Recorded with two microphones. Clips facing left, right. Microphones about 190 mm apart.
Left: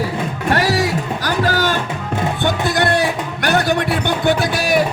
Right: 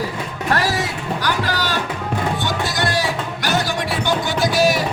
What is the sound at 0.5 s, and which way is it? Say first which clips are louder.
Music: left 4 dB; 35° left (ahead or behind).